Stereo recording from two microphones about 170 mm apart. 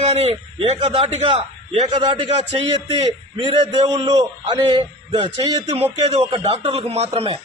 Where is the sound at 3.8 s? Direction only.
20° right (ahead or behind).